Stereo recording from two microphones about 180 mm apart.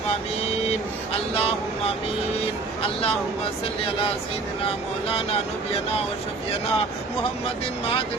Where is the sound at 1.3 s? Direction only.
35° left (ahead or behind).